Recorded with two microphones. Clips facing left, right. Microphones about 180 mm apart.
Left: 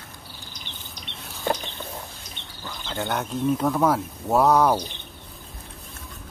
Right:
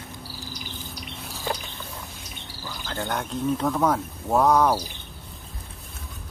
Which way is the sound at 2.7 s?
Centre (ahead or behind).